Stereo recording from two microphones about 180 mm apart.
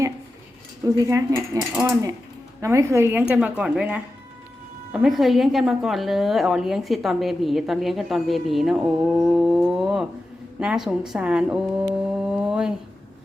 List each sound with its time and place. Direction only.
0.9 s a woman's voice: 20° right (ahead or behind)